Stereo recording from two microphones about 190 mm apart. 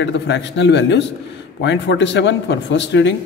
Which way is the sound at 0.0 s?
70° left (ahead or behind).